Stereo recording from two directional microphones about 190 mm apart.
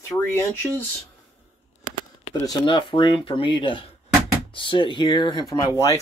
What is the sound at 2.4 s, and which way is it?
Speech, 20° left (ahead or behind).